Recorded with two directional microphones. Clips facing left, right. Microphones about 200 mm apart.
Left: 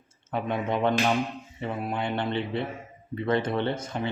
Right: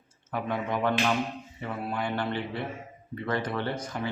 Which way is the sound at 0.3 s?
25° left (ahead or behind).